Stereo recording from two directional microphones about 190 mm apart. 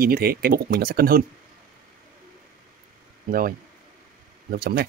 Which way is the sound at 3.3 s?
45° right (ahead or behind).